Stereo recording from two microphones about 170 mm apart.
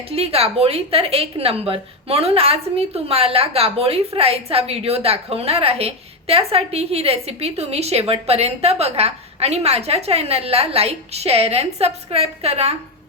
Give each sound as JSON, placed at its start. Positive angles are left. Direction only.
{"t": 0.1, "sound": "a woman's voice", "side_deg": -35}